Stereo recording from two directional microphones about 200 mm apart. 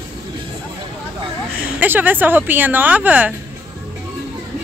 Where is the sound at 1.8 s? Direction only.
10° right (ahead or behind).